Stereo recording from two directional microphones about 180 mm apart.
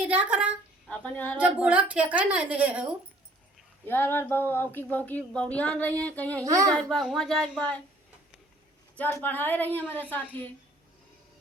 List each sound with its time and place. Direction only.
0.0 s a woman's voice: 10° right (ahead or behind)
0.9 s speech: 5° left (ahead or behind)
1.4 s a woman's voice: 5° right (ahead or behind)
3.8 s speech: 10° left (ahead or behind)
6.4 s a woman's voice: 20° right (ahead or behind)
6.8 s speech: centre (ahead or behind)
9.0 s speech: 10° left (ahead or behind)